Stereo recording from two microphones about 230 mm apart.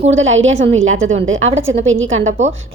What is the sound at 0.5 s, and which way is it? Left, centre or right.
Speech, right.